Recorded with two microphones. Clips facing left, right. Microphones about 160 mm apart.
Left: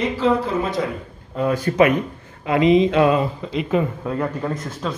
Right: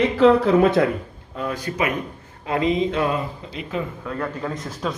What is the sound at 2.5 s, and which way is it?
Speech, 90° left.